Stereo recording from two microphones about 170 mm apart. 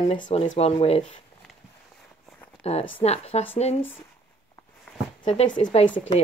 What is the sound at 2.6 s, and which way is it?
Speech, 40° left (ahead or behind).